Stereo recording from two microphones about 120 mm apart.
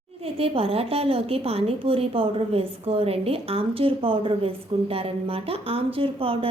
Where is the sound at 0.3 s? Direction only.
55° right (ahead or behind).